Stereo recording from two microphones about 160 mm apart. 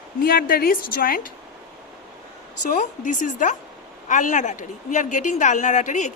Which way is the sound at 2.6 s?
55° left (ahead or behind).